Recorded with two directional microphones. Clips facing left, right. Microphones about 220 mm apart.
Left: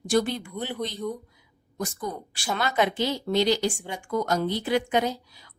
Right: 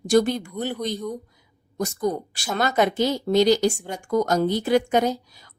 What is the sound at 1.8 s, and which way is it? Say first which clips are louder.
A woman's voice: right 7 dB; 40° right (ahead or behind).